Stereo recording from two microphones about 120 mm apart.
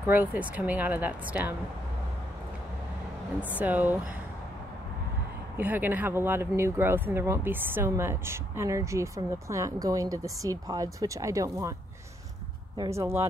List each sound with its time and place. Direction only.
0.0 s speech: 15° right (ahead or behind)
3.5 s speech: 15° right (ahead or behind)
5.6 s speech: 15° right (ahead or behind)
12.9 s speech: 25° right (ahead or behind)